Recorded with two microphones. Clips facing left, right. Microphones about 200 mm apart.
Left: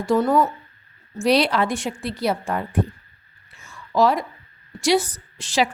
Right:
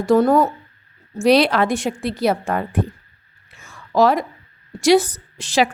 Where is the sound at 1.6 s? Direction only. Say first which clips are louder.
Right 4 dB; 45° right (ahead or behind).